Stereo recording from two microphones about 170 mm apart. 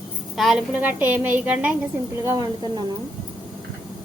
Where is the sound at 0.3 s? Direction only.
5° right (ahead or behind).